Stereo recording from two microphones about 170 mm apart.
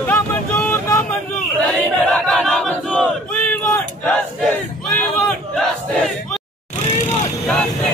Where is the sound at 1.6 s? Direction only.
5° left (ahead or behind).